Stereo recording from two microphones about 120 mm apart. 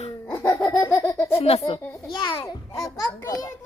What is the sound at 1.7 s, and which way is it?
A child's voice, 45° left (ahead or behind).